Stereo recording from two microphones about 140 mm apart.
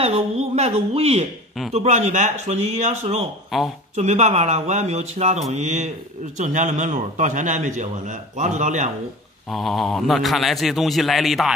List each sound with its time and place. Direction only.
0.0 s a sound: 50° right (ahead or behind)
1.7 s speech: 50° right (ahead or behind)
3.5 s a man's voice: centre (ahead or behind)
3.9 s a man's voice: 55° right (ahead or behind)
9.5 s a man's voice: centre (ahead or behind)